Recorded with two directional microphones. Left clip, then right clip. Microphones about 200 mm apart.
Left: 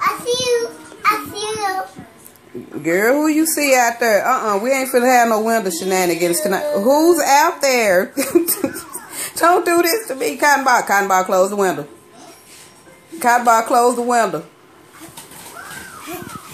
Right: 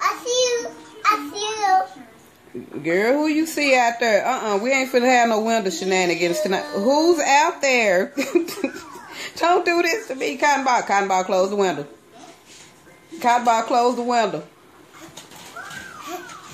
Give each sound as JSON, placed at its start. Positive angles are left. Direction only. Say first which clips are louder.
{"t": 0.0, "sound": "a sound", "louder": "left 2 dB", "side_deg": -20}
{"t": 3.0, "sound": "speech", "louder": "left 4 dB", "side_deg": 0}
{"t": 3.3, "sound": "a woman's voice", "louder": "left 3 dB", "side_deg": -20}
{"t": 4.2, "sound": "speech", "louder": "left 5 dB", "side_deg": -5}
{"t": 13.2, "sound": "speech", "louder": "left 4 dB", "side_deg": 0}